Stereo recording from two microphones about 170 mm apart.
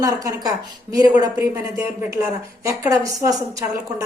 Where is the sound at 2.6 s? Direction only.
20° right (ahead or behind).